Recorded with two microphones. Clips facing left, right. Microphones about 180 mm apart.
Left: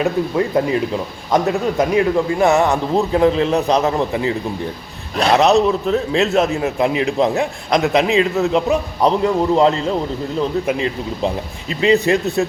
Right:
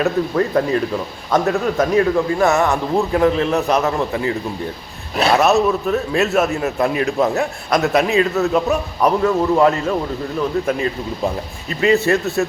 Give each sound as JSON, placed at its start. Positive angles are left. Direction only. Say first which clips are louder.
{"t": 0.0, "sound": "a man's voice", "louder": "even", "side_deg": 15}
{"t": 11.7, "sound": "a man's voice", "louder": "left 1 dB", "side_deg": 20}